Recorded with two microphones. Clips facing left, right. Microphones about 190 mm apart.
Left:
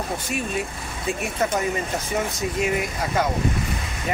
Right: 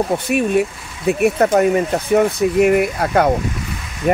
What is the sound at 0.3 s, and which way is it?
Speech, 65° right (ahead or behind).